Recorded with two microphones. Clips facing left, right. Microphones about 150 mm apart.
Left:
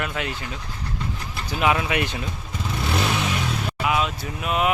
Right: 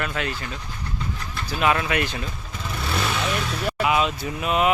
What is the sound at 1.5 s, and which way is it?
Speech, 15° left (ahead or behind).